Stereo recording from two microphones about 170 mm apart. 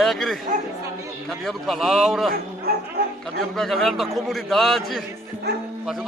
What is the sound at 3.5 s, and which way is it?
A man's voice, centre (ahead or behind).